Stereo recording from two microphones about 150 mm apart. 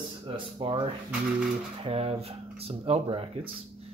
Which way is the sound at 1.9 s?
40° right (ahead or behind).